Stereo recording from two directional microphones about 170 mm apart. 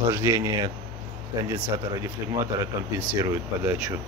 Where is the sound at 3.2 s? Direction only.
15° right (ahead or behind).